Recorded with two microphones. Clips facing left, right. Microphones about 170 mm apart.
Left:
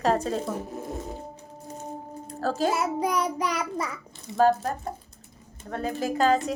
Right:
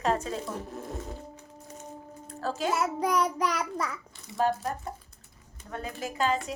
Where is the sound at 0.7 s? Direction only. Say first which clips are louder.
Left 4 dB; 5° left (ahead or behind).